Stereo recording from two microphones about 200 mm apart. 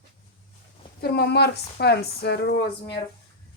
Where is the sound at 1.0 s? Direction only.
55° left (ahead or behind).